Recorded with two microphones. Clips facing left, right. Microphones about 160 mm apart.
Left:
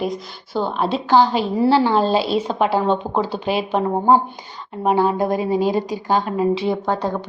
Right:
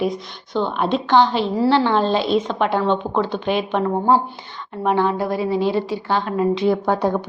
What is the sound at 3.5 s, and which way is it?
Speech, 35° left (ahead or behind).